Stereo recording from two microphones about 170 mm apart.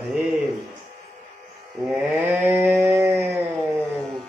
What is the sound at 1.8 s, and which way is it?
Livestock, 10° right (ahead or behind).